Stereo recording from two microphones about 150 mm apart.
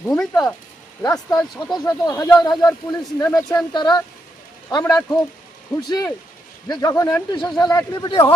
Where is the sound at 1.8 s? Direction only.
25° left (ahead or behind).